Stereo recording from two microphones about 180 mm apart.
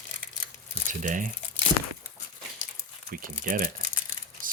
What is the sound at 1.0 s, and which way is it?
Speech, 45° right (ahead or behind).